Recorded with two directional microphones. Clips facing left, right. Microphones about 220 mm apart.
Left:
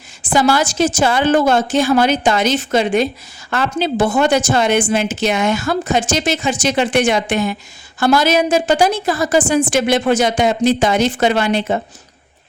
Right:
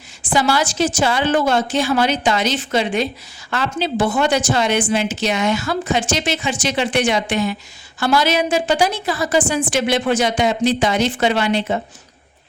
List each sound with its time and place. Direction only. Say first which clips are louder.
0.2 s a woman's voice: left 3 dB; 45° left (ahead or behind)